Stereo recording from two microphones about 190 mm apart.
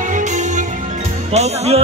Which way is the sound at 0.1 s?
40° right (ahead or behind).